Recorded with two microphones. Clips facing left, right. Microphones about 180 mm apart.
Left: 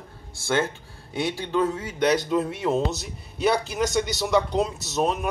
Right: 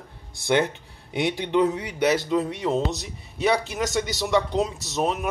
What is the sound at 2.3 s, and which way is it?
A man's voice, centre (ahead or behind).